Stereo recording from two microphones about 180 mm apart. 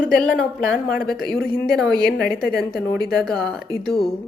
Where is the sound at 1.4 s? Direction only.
60° left (ahead or behind).